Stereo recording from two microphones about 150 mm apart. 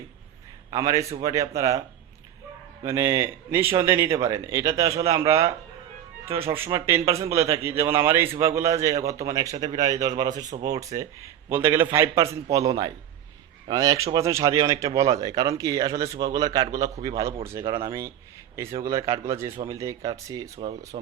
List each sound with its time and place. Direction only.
0.7 s a man's voice: 20° right (ahead or behind)
2.8 s a man's voice: 20° right (ahead or behind)
20.9 s speech: 40° right (ahead or behind)